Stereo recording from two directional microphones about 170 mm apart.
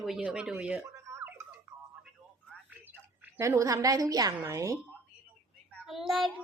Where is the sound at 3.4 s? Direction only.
20° right (ahead or behind).